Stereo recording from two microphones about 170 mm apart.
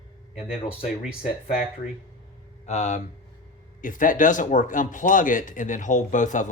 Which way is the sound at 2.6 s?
40° left (ahead or behind).